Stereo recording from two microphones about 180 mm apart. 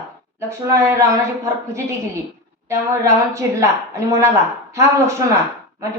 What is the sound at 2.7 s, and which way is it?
Speech, 15° right (ahead or behind).